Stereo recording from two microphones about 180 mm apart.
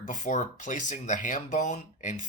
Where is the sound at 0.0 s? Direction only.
45° left (ahead or behind).